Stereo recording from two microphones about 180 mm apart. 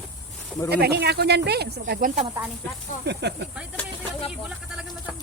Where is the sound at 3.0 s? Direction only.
70° right (ahead or behind).